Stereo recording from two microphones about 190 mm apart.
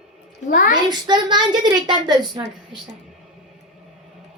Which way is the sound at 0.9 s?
25° right (ahead or behind).